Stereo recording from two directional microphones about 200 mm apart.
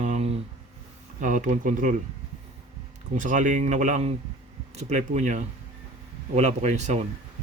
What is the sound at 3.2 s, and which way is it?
Speech, 40° right (ahead or behind).